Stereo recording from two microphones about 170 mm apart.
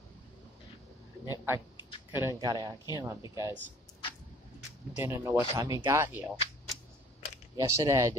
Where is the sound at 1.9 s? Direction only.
25° left (ahead or behind).